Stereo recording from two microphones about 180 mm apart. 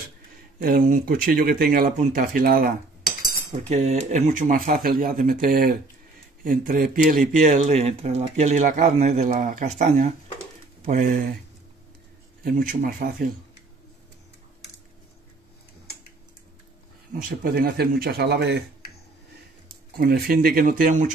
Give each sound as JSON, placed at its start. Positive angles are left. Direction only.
{"t": 0.6, "sound": "speech", "side_deg": -50}
{"t": 3.5, "sound": "speech", "side_deg": -40}
{"t": 10.9, "sound": "speech", "side_deg": -50}
{"t": 12.4, "sound": "speech", "side_deg": -50}
{"t": 17.1, "sound": "speech", "side_deg": -55}
{"t": 20.0, "sound": "speech", "side_deg": -55}